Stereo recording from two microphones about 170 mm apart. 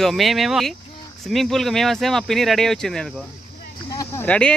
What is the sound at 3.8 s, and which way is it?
Speech, 20° left (ahead or behind).